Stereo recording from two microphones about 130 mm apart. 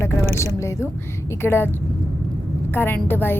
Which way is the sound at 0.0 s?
20° left (ahead or behind).